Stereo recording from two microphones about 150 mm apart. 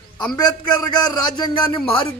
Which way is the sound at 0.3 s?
25° left (ahead or behind).